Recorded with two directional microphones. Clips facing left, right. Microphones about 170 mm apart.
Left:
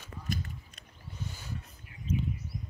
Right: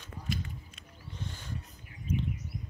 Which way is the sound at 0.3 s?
45° left (ahead or behind).